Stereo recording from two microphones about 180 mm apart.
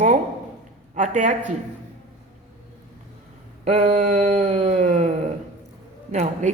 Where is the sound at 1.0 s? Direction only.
45° right (ahead or behind).